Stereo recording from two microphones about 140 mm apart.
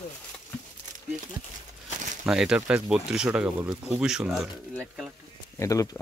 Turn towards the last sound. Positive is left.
turn(degrees=25)  # may be behind; listen again after turning